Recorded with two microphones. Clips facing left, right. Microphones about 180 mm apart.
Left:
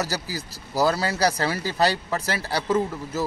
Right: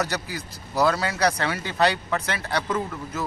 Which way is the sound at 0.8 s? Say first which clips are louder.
Even; 35° left (ahead or behind).